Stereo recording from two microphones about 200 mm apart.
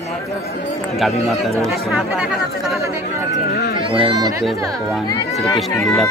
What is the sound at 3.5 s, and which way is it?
Speech, 55° left (ahead or behind).